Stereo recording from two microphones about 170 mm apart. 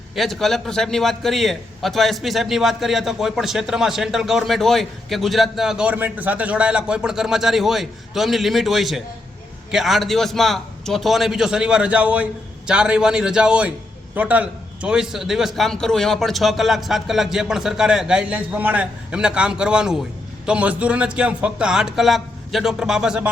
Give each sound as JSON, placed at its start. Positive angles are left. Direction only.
{"t": 0.2, "sound": "a man's voice", "side_deg": 0}